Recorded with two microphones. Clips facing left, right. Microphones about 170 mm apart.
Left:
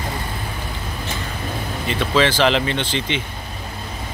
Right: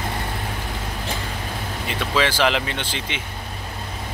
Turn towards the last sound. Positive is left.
turn(degrees=-5)  # may be behind; listen again after turning